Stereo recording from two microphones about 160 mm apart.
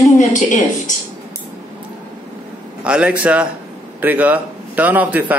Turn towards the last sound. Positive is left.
turn(degrees=-10)  # may be behind; listen again after turning